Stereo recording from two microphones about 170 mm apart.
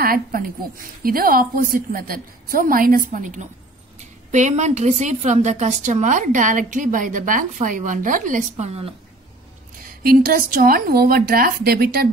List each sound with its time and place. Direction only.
0.0 s a woman's voice: 60° right (ahead or behind); by 8.9 s 40° right (ahead or behind)
10.0 s a woman's voice: 60° right (ahead or behind)